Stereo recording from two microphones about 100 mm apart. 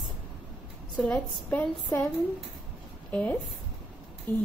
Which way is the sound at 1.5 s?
15° left (ahead or behind).